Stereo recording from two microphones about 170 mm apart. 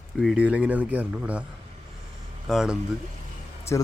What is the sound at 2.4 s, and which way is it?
Speech, centre (ahead or behind).